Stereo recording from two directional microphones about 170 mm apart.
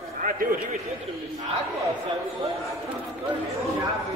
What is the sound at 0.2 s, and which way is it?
Speech, 55° right (ahead or behind).